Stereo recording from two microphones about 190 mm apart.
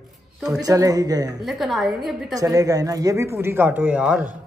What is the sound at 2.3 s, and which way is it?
Speech, 20° right (ahead or behind).